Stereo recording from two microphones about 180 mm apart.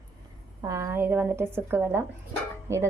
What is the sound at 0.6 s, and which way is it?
A woman's voice, 15° right (ahead or behind).